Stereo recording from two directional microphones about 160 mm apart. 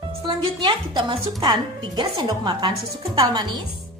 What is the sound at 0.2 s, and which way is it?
A woman's voice, 30° right (ahead or behind).